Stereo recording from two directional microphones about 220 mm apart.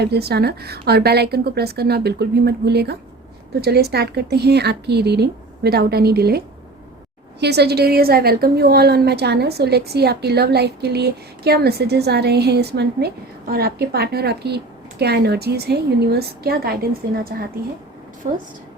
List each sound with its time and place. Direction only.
0.0 s a woman's voice: 45° right (ahead or behind)
18.2 s speech: 30° right (ahead or behind)